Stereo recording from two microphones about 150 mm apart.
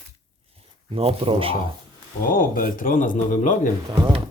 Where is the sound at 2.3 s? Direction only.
70° left (ahead or behind).